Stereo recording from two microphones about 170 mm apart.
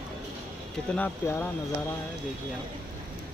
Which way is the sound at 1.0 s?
15° left (ahead or behind).